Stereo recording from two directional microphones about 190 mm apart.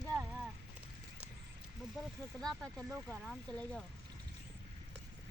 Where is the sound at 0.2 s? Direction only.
5° right (ahead or behind).